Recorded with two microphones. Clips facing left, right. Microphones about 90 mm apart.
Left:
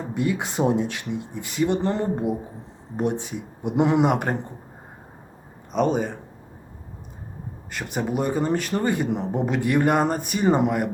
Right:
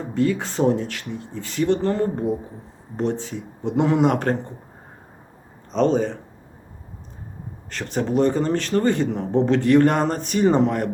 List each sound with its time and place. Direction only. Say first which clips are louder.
0.1 s speech: right 4 dB; 15° left (ahead or behind)
5.7 s speech: right 3 dB; 10° left (ahead or behind)
7.7 s speech: right 3 dB; 10° left (ahead or behind)